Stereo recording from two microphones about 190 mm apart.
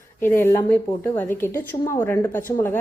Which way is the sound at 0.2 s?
15° left (ahead or behind).